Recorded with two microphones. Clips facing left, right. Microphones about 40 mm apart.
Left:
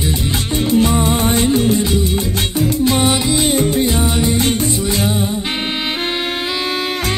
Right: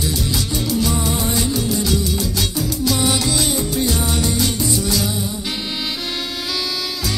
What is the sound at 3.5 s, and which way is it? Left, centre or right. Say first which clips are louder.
Music: left 5 dB; left.